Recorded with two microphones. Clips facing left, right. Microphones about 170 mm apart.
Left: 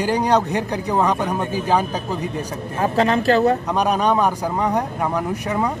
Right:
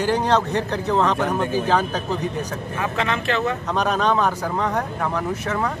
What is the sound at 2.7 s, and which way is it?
Speech, 40° left (ahead or behind).